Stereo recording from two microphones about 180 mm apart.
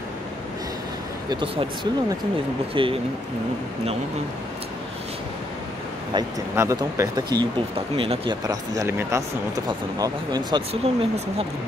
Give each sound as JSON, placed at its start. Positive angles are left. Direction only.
{"t": 1.3, "sound": "speech", "side_deg": -25}
{"t": 6.5, "sound": "speech", "side_deg": -15}
{"t": 8.5, "sound": "speech", "side_deg": -15}
{"t": 10.7, "sound": "speech", "side_deg": -35}